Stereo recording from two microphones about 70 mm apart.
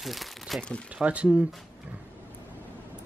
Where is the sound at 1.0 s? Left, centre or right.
Centre.